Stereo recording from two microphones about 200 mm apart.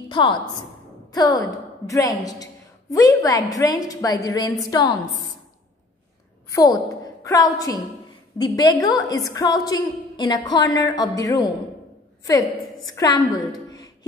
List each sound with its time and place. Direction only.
0.1 s a woman's voice: 25° left (ahead or behind)
6.5 s a woman's voice: 20° left (ahead or behind)